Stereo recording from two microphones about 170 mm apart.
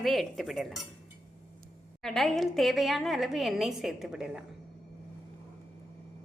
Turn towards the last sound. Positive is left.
turn(degrees=-5)  # may be behind; listen again after turning